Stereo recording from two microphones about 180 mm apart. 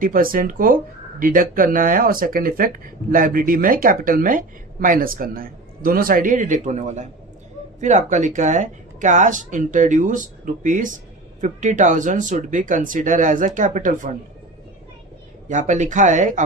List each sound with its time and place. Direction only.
0.0 s speech: 50° right (ahead or behind)
15.4 s speech: 45° right (ahead or behind)